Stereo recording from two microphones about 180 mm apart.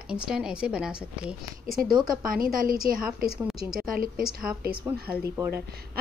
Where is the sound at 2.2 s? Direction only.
50° right (ahead or behind).